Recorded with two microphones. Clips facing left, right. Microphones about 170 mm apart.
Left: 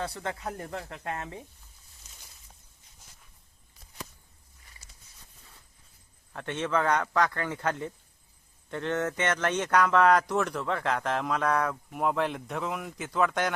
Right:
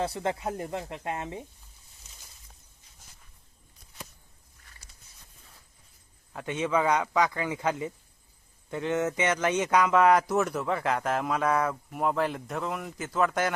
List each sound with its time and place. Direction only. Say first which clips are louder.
0.0 s speech: right 4 dB; 25° right (ahead or behind)
2.0 s a sound: even; centre (ahead or behind)
6.3 s a man's voice: right 2 dB; 10° right (ahead or behind)